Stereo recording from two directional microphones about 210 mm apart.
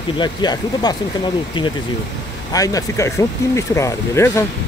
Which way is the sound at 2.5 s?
15° left (ahead or behind).